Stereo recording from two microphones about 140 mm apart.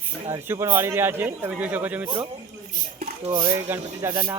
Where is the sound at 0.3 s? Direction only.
15° right (ahead or behind).